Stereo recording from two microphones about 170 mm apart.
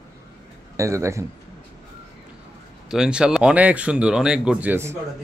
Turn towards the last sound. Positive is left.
turn(degrees=-15)  # may be behind; listen again after turning